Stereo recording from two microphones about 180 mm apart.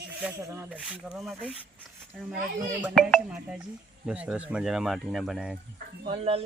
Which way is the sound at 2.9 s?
Centre (ahead or behind).